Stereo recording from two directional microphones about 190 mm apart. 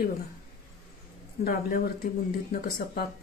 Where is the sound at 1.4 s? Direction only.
50° left (ahead or behind).